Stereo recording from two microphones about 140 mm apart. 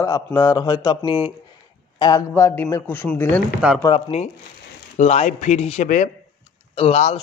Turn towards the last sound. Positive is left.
turn(degrees=50)  # may be behind; listen again after turning